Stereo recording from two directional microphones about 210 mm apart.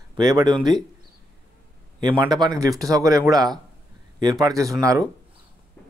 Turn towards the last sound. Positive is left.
turn(degrees=-15)  # may be behind; listen again after turning